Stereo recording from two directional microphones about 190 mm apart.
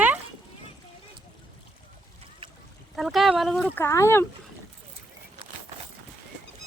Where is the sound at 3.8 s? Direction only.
15° left (ahead or behind).